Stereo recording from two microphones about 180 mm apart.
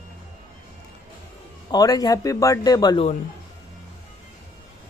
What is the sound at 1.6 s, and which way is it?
Speech, 20° left (ahead or behind).